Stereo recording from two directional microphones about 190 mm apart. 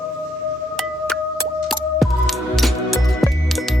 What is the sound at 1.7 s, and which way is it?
Music, centre (ahead or behind).